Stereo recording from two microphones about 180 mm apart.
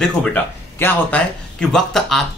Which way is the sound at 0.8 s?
5° left (ahead or behind).